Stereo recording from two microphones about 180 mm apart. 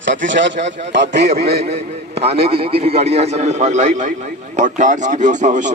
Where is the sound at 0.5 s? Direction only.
40° right (ahead or behind).